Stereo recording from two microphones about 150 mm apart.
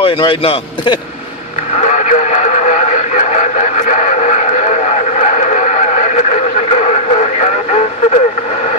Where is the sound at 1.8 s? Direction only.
50° left (ahead or behind).